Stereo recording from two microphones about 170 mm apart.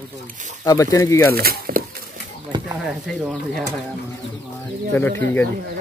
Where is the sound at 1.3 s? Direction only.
60° right (ahead or behind).